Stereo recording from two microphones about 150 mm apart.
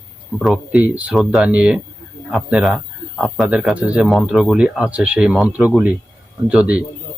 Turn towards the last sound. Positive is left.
turn(degrees=-10)  # may be behind; listen again after turning